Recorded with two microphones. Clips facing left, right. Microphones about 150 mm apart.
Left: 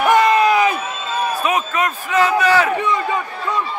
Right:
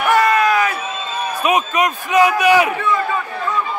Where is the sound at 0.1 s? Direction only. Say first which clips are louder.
Even; 20° left (ahead or behind).